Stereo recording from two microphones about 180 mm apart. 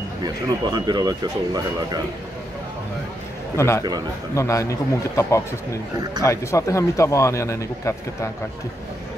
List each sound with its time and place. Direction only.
0.2 s speech: 25° right (ahead or behind)
3.5 s speech: 15° left (ahead or behind)